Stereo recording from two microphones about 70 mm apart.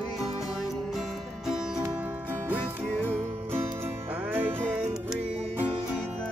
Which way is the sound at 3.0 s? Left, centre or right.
Right.